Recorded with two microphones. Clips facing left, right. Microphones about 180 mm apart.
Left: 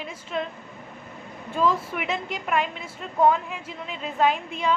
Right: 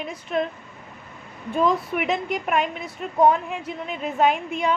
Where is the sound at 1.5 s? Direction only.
20° right (ahead or behind).